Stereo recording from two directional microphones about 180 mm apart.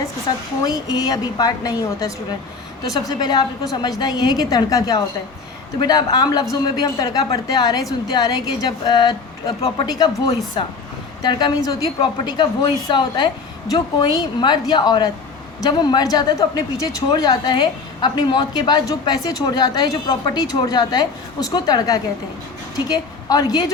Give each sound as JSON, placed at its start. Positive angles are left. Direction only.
{"t": 0.3, "sound": "a woman's voice", "side_deg": 25}